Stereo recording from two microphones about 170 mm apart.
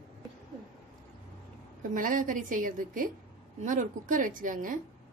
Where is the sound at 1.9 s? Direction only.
50° right (ahead or behind).